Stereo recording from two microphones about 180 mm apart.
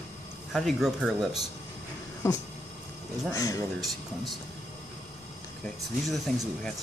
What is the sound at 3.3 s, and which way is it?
Speech, 20° left (ahead or behind).